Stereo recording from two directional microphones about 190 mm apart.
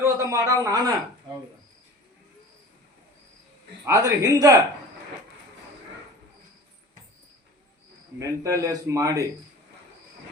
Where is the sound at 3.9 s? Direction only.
20° right (ahead or behind).